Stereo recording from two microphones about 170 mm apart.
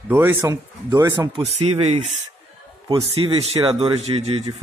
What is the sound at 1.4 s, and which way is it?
Speech, 35° right (ahead or behind).